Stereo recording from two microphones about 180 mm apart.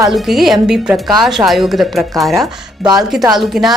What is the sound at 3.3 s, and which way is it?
Speech, centre (ahead or behind).